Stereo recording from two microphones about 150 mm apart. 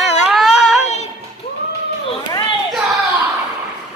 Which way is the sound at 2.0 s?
35° left (ahead or behind).